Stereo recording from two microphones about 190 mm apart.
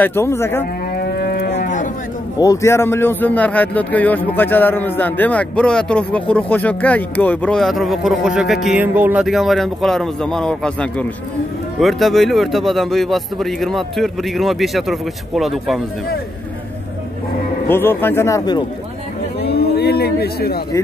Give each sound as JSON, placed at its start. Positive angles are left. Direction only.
{"t": 0.0, "sound": "a man's voice", "side_deg": 15}
{"t": 0.9, "sound": "moo", "side_deg": 55}
{"t": 1.5, "sound": "cattle", "side_deg": 40}
{"t": 2.3, "sound": "a man's voice", "side_deg": 15}
{"t": 17.6, "sound": "a man's voice", "side_deg": 10}
{"t": 19.4, "sound": "a sound", "side_deg": 60}